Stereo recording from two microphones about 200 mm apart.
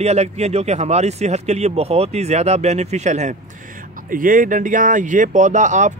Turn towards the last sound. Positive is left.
turn(degrees=-40)  # may be behind; listen again after turning